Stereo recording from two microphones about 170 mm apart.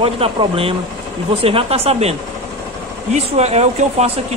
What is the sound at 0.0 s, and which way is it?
Speech, 35° right (ahead or behind).